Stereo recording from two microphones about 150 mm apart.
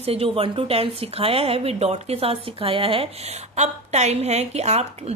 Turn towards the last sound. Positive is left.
turn(degrees=-45)  # may be behind; listen again after turning